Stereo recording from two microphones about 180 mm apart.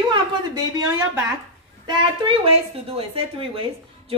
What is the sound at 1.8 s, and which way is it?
A woman's voice, 25° right (ahead or behind).